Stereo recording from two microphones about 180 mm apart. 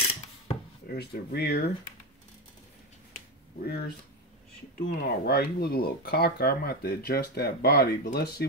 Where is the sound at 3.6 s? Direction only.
60° left (ahead or behind).